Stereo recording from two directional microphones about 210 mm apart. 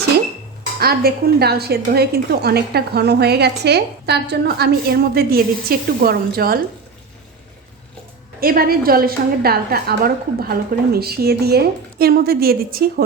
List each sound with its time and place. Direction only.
0.8 s a woman's voice: 45° right (ahead or behind)
8.4 s a woman's voice: 45° right (ahead or behind)